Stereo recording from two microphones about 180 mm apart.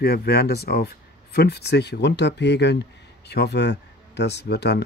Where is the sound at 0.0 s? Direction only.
60° left (ahead or behind).